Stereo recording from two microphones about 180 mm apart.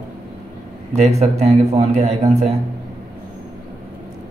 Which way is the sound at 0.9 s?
40° right (ahead or behind).